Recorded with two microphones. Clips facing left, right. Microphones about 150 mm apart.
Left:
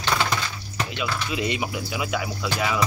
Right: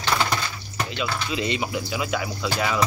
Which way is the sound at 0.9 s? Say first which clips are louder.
Right 1 dB; 10° left (ahead or behind).